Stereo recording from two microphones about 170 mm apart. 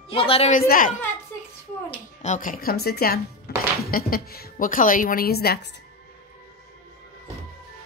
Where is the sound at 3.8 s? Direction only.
55° left (ahead or behind).